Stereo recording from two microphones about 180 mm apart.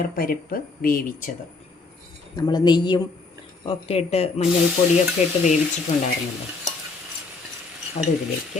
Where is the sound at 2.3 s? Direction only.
25° left (ahead or behind).